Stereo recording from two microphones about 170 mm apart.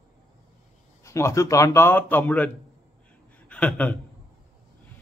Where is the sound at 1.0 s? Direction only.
15° left (ahead or behind).